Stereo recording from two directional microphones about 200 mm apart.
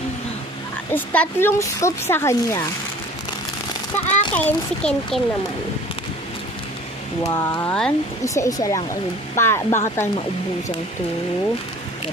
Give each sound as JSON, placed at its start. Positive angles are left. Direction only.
{"t": 0.9, "sound": "speech", "side_deg": 10}
{"t": 4.0, "sound": "a sound", "side_deg": 35}
{"t": 4.4, "sound": "a child's voice", "side_deg": 5}
{"t": 7.3, "sound": "a child's voice", "side_deg": 15}
{"t": 8.2, "sound": "speech", "side_deg": 15}